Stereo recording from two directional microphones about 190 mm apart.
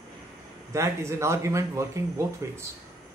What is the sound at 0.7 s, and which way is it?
A man's voice, 15° right (ahead or behind).